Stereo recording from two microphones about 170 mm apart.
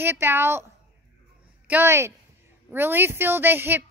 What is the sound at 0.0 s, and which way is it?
Speech, 10° right (ahead or behind).